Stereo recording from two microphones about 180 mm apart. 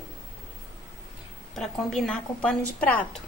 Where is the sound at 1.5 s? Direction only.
Centre (ahead or behind).